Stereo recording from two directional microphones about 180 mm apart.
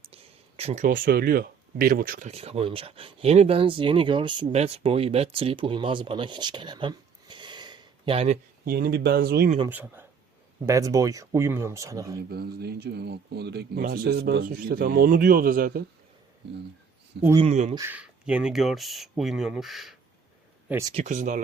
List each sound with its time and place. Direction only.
0.1 s a sound: 35° right (ahead or behind)
0.9 s speech: 50° right (ahead or behind)
2.3 s speech: 35° right (ahead or behind)
8.6 s speech: 55° right (ahead or behind)
9.6 s speech: 10° right (ahead or behind)
12.3 s speech: 60° right (ahead or behind)
17.2 s speech: 70° right (ahead or behind)
17.5 s speech: 40° right (ahead or behind)
17.7 s speech: 10° right (ahead or behind)
20.7 s speech: 15° right (ahead or behind)
20.9 s speech: 40° right (ahead or behind)